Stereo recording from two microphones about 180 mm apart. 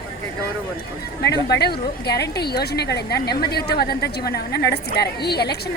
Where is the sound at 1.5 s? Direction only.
65° left (ahead or behind).